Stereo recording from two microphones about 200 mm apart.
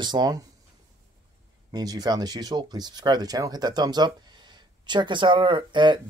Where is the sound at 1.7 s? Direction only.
20° right (ahead or behind).